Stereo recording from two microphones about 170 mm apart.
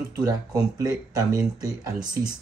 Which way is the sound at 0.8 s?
20° right (ahead or behind).